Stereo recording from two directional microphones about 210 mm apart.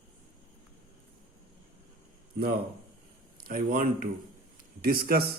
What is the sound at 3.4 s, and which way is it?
A man's voice, 45° right (ahead or behind).